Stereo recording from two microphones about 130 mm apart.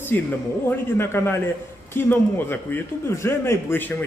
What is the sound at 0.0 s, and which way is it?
A man's voice, 15° left (ahead or behind).